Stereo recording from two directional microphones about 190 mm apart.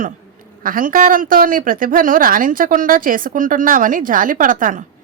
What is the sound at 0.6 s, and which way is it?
A man's voice, 45° right (ahead or behind).